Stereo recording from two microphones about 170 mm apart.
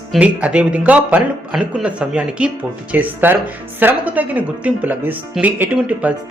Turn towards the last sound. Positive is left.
turn(degrees=-10)  # may be behind; listen again after turning